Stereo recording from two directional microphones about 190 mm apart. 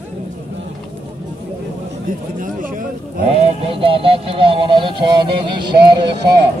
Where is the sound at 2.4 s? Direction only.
45° right (ahead or behind).